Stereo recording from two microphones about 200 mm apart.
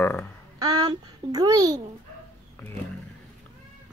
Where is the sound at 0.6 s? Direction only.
20° right (ahead or behind).